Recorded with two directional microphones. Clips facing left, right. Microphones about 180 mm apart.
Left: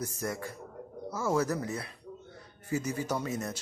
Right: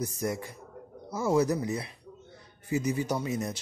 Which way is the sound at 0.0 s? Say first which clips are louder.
Right 3 dB; 15° right (ahead or behind).